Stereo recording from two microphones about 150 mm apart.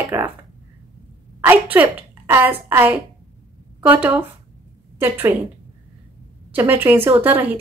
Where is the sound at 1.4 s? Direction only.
10° right (ahead or behind).